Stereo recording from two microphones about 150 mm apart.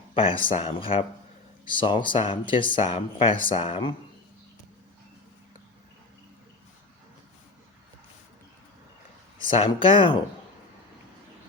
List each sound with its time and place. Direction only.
0.1 s speech: 35° left (ahead or behind)
9.4 s speech: 35° left (ahead or behind)